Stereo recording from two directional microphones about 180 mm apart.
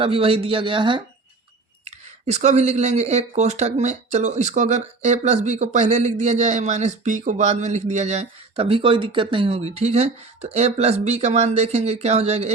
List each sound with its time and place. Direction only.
0.0 s speech: 30° right (ahead or behind)
1.8 s speech: 40° right (ahead or behind)